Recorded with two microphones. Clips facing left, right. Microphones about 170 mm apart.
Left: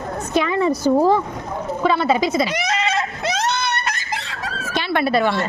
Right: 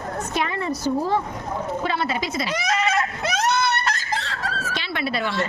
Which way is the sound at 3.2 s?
20° left (ahead or behind).